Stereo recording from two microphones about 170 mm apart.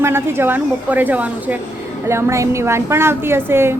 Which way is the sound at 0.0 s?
15° right (ahead or behind).